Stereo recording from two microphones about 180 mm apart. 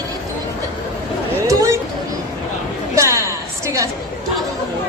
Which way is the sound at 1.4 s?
20° right (ahead or behind).